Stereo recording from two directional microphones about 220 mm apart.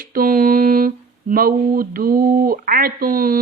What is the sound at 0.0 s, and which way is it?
Speech, 40° right (ahead or behind).